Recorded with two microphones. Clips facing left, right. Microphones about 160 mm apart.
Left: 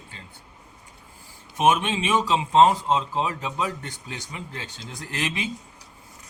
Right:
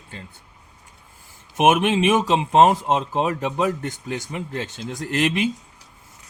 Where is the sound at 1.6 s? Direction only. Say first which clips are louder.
Right 4 dB; 60° right (ahead or behind).